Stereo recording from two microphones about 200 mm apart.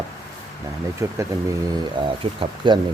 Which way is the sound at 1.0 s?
15° right (ahead or behind).